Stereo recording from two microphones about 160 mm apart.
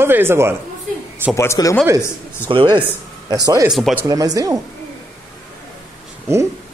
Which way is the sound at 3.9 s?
20° right (ahead or behind).